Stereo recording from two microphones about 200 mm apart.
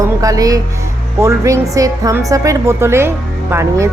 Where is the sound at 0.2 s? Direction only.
15° right (ahead or behind).